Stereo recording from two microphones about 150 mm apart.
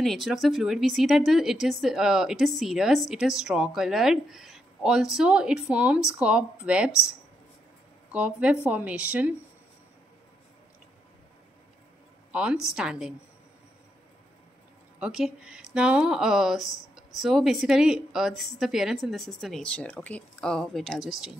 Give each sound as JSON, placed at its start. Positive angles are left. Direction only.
{"t": 0.0, "sound": "speech", "side_deg": 0}
{"t": 8.1, "sound": "speech", "side_deg": -10}
{"t": 12.3, "sound": "speech", "side_deg": -10}
{"t": 15.0, "sound": "speech", "side_deg": -5}